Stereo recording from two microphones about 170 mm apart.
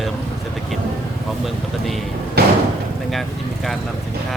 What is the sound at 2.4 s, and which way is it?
Slam, 65° right (ahead or behind).